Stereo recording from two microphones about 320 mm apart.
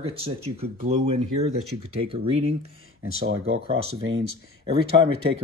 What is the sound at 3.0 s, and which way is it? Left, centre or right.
Speech, right.